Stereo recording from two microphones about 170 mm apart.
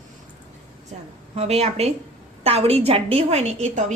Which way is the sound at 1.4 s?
40° right (ahead or behind).